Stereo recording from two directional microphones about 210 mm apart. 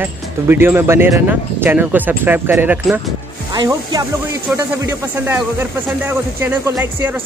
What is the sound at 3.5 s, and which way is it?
Speech, 20° right (ahead or behind).